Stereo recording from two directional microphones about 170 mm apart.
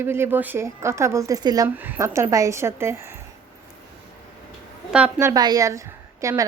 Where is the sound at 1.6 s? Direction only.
10° right (ahead or behind).